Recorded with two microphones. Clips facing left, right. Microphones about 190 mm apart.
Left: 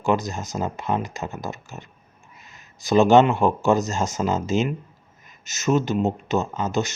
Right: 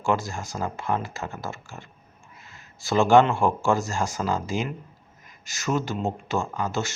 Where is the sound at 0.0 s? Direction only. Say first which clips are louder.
Left 3 dB; 20° left (ahead or behind).